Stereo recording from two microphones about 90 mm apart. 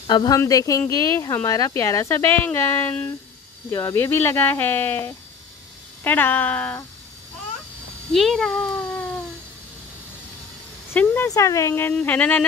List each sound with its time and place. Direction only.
0.0 s speech: 60° left (ahead or behind)
0.5 s speech: 40° left (ahead or behind); by 6.8 s 15° left (ahead or behind)
8.1 s speech: 5° left (ahead or behind)
8.5 s cat: 15° left (ahead or behind)
10.9 s a sound: 25° left (ahead or behind)
11.2 s speech: 35° left (ahead or behind)
11.9 s a sound: 15° left (ahead or behind)